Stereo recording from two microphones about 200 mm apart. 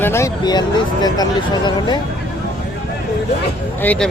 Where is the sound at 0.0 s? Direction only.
15° left (ahead or behind).